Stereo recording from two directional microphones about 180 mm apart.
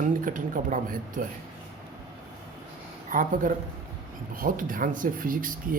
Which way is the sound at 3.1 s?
45° right (ahead or behind).